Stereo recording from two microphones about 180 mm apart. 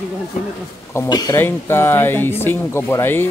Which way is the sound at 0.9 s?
15° left (ahead or behind).